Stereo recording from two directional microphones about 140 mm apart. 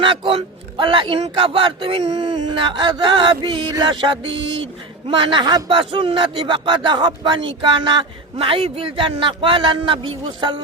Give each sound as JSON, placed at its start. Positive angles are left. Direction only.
{"t": 0.0, "sound": "speech", "side_deg": -40}